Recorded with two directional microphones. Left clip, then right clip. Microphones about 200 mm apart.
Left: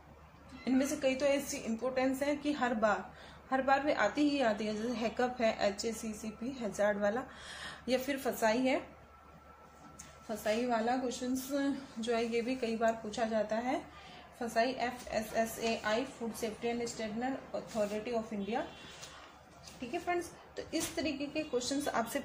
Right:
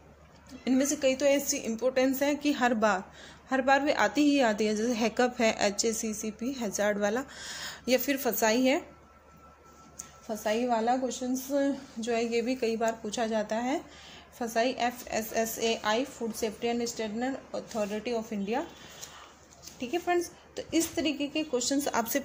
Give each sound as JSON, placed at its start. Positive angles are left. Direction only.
{"t": 0.7, "sound": "a woman's voice", "side_deg": -45}
{"t": 10.2, "sound": "a woman's voice", "side_deg": -35}
{"t": 19.6, "sound": "speech", "side_deg": -45}